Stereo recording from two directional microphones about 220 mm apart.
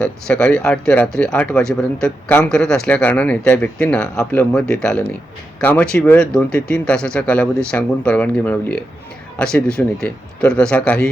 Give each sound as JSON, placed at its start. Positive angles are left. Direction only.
{"t": 0.0, "sound": "speech", "side_deg": 5}